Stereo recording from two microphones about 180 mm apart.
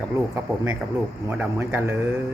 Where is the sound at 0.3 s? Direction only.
10° right (ahead or behind).